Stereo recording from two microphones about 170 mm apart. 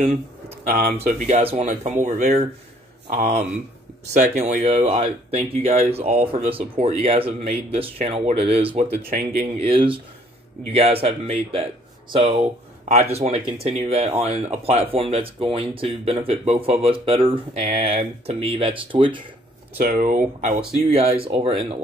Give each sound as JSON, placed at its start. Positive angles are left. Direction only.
{"t": 0.7, "sound": "speech", "side_deg": -60}
{"t": 0.9, "sound": "speech", "side_deg": -40}
{"t": 19.9, "sound": "speech", "side_deg": -45}